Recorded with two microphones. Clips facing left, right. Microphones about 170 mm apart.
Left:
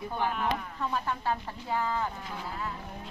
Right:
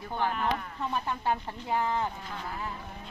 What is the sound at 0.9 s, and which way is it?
Speech, 20° right (ahead or behind).